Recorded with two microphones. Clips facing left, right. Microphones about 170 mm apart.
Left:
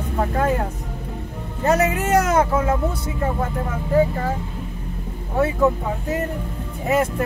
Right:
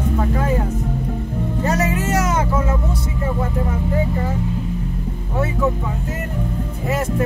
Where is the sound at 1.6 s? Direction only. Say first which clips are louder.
Left 3 dB; 55° left (ahead or behind).